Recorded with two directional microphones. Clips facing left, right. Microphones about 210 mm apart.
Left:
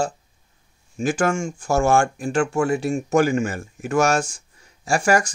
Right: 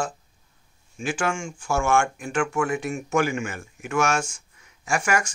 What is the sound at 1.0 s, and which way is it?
Speech, 40° left (ahead or behind).